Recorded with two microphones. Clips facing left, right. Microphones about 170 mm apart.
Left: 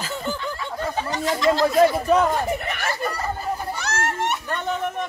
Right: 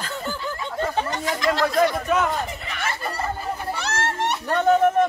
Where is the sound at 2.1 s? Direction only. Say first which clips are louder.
Left 4 dB; 35° left (ahead or behind).